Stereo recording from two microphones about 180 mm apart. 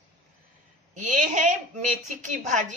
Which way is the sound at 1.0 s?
45° right (ahead or behind).